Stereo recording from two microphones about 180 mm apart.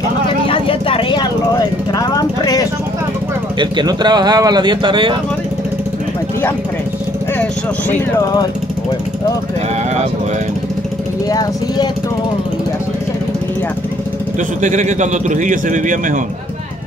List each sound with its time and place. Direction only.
0.5 s vehicle: 30° left (ahead or behind)
3.5 s speech: 25° right (ahead or behind)
8.2 s speech: 20° left (ahead or behind)
11.2 s speech: 20° left (ahead or behind)
14.6 s a man's voice: 40° right (ahead or behind)